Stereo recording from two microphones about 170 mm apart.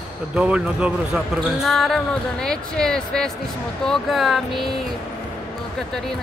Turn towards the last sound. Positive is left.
turn(degrees=0)  # may be behind; listen again after turning